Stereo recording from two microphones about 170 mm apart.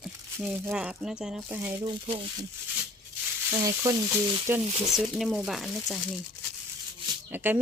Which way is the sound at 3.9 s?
15° right (ahead or behind).